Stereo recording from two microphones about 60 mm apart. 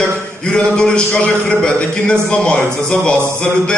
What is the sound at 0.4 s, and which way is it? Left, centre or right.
A man's voice, centre.